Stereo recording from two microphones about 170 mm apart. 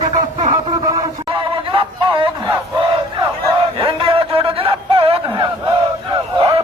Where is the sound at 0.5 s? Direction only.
25° right (ahead or behind).